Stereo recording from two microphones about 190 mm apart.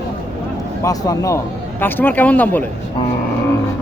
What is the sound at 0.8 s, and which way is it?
Speech, 15° left (ahead or behind).